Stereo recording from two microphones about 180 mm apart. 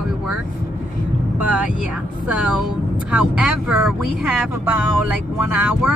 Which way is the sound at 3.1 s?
5° right (ahead or behind).